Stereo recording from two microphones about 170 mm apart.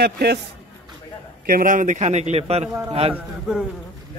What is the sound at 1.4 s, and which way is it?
A man's voice, 55° right (ahead or behind).